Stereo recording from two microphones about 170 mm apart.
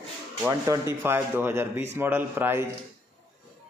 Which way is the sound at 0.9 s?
15° right (ahead or behind).